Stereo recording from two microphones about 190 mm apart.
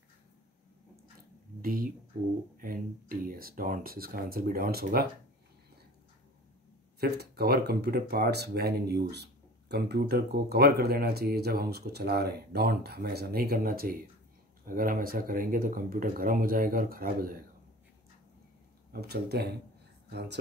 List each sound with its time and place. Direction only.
1.6 s a sound: 50° right (ahead or behind)
2.5 s speech: 50° right (ahead or behind)
7.0 s speech: 55° right (ahead or behind)
18.9 s speech: 55° right (ahead or behind)